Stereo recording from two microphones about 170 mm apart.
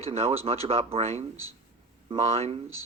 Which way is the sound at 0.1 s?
35° right (ahead or behind).